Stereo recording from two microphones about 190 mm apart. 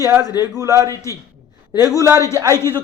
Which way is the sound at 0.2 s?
20° left (ahead or behind).